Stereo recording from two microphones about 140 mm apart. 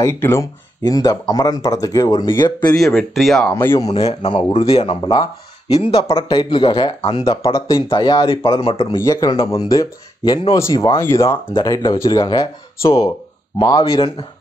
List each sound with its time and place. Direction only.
0.0 s speech: 20° left (ahead or behind)
3.0 s speech: centre (ahead or behind)
3.4 s speech: 20° left (ahead or behind)
4.3 s speech: 40° left (ahead or behind)
5.1 s speech: 25° left (ahead or behind)